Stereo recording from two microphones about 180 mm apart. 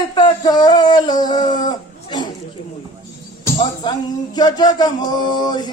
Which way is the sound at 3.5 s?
25° left (ahead or behind).